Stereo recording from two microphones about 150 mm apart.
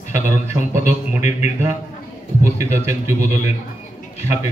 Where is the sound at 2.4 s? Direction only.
15° right (ahead or behind).